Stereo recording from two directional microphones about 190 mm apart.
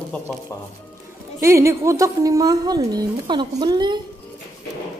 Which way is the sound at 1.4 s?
15° right (ahead or behind).